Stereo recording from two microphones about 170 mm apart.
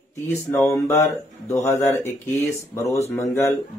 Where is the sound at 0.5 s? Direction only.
15° left (ahead or behind).